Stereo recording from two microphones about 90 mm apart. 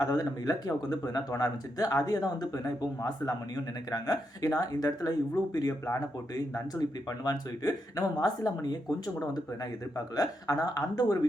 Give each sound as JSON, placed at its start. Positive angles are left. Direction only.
{"t": 0.0, "sound": "speech", "side_deg": 45}
{"t": 10.2, "sound": "speech", "side_deg": 45}